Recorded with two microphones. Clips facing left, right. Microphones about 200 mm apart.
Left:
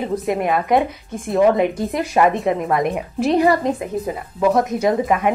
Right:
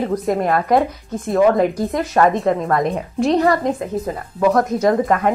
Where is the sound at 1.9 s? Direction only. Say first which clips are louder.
Right 1 dB; 15° left (ahead or behind).